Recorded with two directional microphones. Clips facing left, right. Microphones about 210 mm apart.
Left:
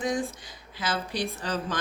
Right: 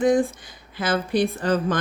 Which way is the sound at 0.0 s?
55° right (ahead or behind).